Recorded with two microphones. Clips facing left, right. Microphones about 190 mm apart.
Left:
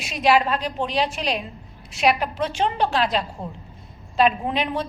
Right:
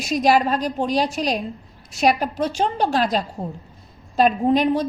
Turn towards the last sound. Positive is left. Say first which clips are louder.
# right 7 dB
turn(degrees=-40)  # may be behind; listen again after turning